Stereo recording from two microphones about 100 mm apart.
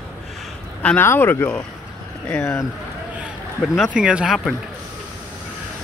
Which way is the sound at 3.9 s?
10° right (ahead or behind).